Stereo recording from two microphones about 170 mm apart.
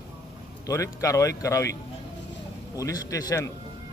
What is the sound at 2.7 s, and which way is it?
Speech, 20° left (ahead or behind).